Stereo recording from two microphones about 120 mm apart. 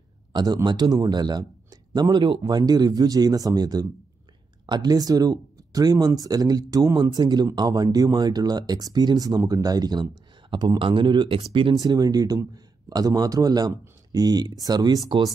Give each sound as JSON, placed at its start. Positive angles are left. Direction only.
{"t": 0.3, "sound": "a man's voice", "side_deg": -35}
{"t": 11.7, "sound": "speech", "side_deg": -30}